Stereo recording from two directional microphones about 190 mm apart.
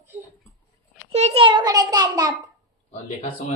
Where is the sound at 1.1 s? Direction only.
35° right (ahead or behind).